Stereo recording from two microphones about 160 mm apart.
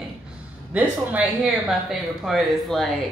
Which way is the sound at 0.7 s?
5° right (ahead or behind).